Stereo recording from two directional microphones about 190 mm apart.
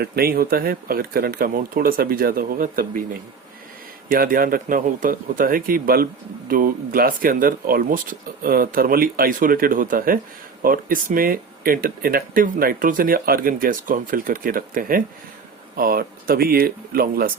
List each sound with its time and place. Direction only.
0.0 s speech: 55° right (ahead or behind)
4.1 s speech: 50° right (ahead or behind)